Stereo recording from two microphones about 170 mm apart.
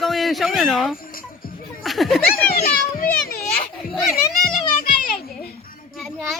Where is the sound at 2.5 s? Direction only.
60° left (ahead or behind).